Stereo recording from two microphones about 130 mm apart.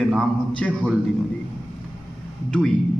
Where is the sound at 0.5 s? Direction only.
5° left (ahead or behind).